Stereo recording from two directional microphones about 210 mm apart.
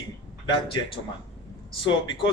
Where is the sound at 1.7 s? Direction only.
25° left (ahead or behind).